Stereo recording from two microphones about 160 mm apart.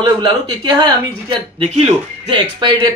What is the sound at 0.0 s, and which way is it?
Speech, 30° right (ahead or behind).